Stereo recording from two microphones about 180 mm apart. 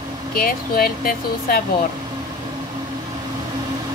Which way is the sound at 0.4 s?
55° left (ahead or behind).